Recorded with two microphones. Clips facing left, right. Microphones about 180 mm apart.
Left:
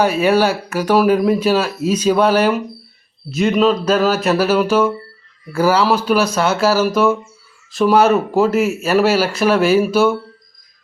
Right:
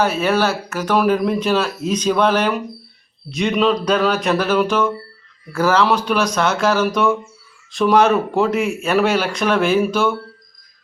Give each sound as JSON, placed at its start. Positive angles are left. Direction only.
{"t": 0.0, "sound": "speech", "side_deg": 10}